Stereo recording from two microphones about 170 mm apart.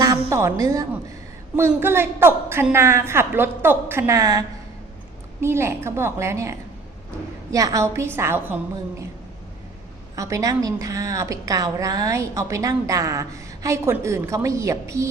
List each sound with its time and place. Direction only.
0.0 s a woman's voice: 20° right (ahead or behind)
10.2 s a woman's voice: 20° right (ahead or behind)